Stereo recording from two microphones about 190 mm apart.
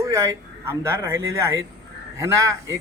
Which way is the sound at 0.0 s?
15° right (ahead or behind).